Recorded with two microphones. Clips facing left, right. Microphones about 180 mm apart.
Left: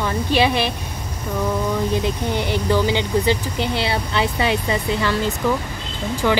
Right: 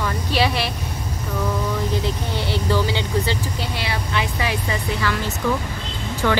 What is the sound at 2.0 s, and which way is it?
Speech, 15° left (ahead or behind).